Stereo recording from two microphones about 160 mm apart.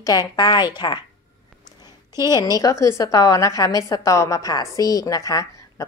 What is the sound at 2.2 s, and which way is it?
Speech, 25° left (ahead or behind).